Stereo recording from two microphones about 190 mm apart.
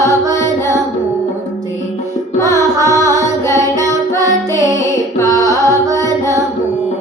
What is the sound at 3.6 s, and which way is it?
Music, 15° right (ahead or behind).